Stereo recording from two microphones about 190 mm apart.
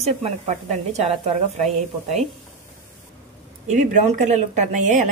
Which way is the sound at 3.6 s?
40° right (ahead or behind).